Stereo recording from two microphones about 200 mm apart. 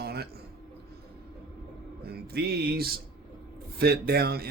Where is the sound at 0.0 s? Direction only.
50° right (ahead or behind).